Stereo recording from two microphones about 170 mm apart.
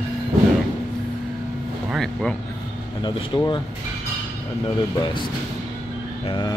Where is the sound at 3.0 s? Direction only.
25° left (ahead or behind).